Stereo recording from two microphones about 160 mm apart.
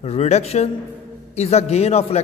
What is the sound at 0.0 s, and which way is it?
A man's voice, 40° left (ahead or behind).